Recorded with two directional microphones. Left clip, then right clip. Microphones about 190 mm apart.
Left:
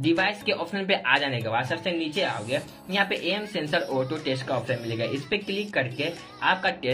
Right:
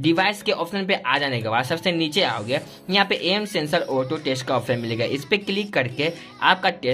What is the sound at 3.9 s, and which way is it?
Speech, 20° right (ahead or behind).